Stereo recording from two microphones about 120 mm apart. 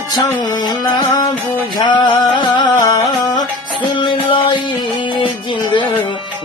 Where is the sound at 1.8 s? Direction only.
40° left (ahead or behind).